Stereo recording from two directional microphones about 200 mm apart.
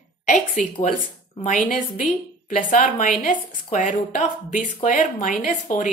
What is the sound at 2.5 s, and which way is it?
Speech, 40° left (ahead or behind).